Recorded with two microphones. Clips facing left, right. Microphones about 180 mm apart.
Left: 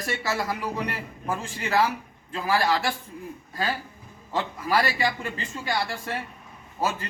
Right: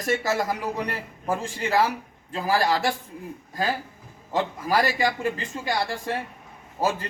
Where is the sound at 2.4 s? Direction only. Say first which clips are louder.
Right 1 dB; 40° right (ahead or behind).